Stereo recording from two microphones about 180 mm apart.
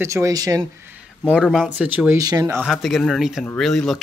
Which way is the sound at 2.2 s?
20° right (ahead or behind).